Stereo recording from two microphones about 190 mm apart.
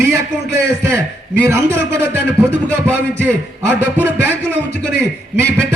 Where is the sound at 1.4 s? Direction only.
15° right (ahead or behind).